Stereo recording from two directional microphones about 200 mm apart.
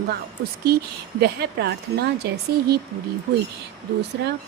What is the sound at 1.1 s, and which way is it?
Speech, 55° right (ahead or behind).